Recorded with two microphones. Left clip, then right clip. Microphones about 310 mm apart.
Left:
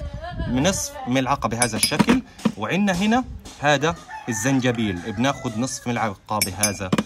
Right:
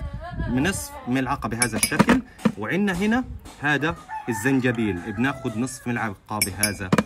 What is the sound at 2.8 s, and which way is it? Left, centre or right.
Speech, centre.